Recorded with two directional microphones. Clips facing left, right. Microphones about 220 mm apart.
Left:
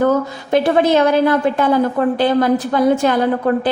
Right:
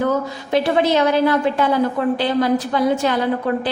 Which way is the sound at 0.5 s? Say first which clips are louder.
Left 3 dB; 50° left (ahead or behind).